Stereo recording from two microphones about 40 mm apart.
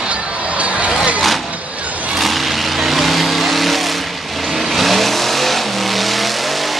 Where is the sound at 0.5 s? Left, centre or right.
Right.